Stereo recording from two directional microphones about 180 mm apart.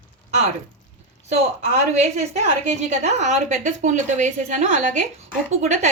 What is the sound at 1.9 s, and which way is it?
Speech, 40° right (ahead or behind).